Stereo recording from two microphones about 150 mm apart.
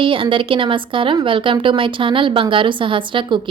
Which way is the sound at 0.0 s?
35° right (ahead or behind).